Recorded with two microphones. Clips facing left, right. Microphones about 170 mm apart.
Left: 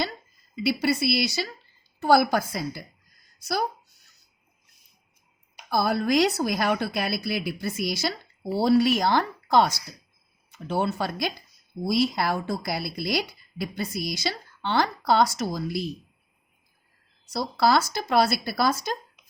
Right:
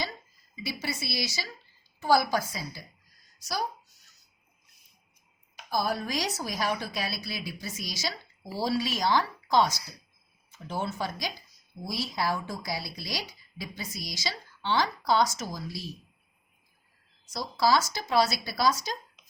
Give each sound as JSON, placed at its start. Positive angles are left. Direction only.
{"t": 0.5, "sound": "a woman's voice", "side_deg": 65}
{"t": 5.7, "sound": "a woman's voice", "side_deg": 65}
{"t": 17.2, "sound": "a woman's voice", "side_deg": 65}